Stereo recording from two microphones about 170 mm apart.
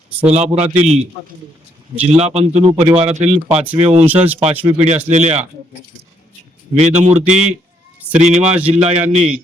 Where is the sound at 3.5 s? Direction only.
10° right (ahead or behind).